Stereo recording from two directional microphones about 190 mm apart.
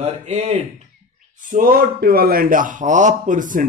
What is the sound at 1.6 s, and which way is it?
Speech, 50° right (ahead or behind).